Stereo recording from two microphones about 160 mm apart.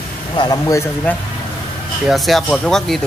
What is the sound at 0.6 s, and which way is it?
Speech, 15° left (ahead or behind).